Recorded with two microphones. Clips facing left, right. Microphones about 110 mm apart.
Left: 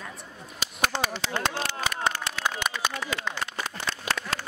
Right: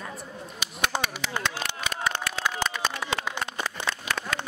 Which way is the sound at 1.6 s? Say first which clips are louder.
Left 2 dB; 30° left (ahead or behind).